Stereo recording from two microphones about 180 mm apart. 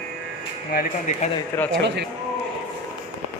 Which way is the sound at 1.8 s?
75° right (ahead or behind).